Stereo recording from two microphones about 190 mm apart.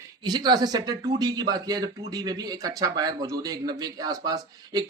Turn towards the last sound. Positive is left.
turn(degrees=-20)  # may be behind; listen again after turning